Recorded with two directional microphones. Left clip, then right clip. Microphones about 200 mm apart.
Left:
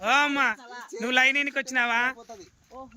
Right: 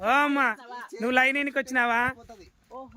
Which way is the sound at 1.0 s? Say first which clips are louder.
Left 1 dB; 20° right (ahead or behind).